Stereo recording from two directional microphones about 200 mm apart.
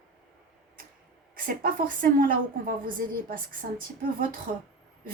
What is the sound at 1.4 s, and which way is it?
A woman's voice, 45° right (ahead or behind).